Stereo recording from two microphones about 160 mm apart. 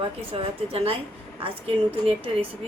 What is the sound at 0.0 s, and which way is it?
A woman's voice, 35° right (ahead or behind).